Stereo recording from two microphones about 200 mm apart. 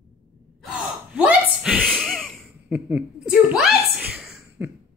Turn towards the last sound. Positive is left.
turn(degrees=0)  # may be behind; listen again after turning